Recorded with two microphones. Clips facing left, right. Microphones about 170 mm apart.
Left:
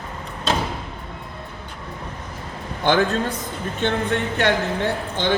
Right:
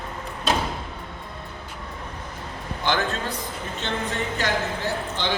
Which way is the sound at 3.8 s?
60° left (ahead or behind).